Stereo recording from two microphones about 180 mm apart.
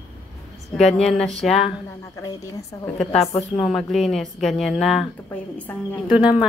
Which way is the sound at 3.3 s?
35° left (ahead or behind).